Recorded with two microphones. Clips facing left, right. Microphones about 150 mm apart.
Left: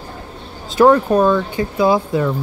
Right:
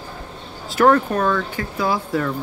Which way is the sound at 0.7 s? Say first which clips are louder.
Left 4 dB; 20° left (ahead or behind).